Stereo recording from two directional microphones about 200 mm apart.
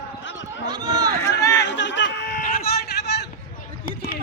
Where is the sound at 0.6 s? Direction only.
20° right (ahead or behind).